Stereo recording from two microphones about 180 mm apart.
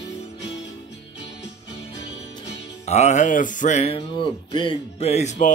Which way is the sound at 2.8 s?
40° left (ahead or behind).